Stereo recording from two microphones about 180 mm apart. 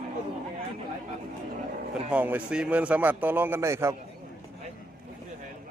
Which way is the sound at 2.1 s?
10° right (ahead or behind).